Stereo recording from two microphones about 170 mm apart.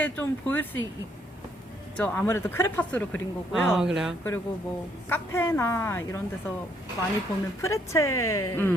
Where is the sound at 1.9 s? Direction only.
10° left (ahead or behind).